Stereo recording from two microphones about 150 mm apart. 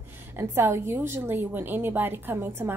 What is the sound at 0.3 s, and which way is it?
A woman's voice, 15° right (ahead or behind).